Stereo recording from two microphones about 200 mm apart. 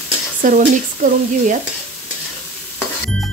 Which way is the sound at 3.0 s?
Centre (ahead or behind).